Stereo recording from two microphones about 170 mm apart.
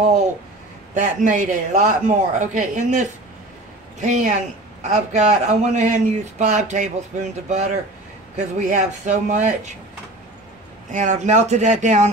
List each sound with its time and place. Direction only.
0.9 s a man's voice: 50° right (ahead or behind)
10.9 s a man's voice: 45° right (ahead or behind)